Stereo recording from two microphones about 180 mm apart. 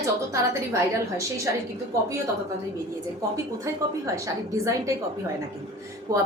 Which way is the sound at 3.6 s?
20° right (ahead or behind).